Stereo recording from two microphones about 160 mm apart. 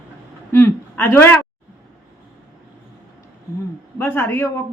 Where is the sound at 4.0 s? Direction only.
15° left (ahead or behind).